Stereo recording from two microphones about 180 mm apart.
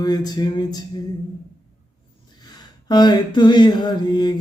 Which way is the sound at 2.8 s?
25° left (ahead or behind).